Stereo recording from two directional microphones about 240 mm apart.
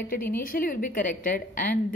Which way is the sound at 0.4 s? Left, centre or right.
Left.